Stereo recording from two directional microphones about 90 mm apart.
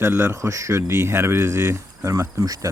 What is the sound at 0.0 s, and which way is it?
Speech, 25° right (ahead or behind).